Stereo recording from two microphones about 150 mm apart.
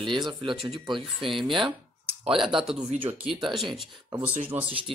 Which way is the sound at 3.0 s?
10° right (ahead or behind).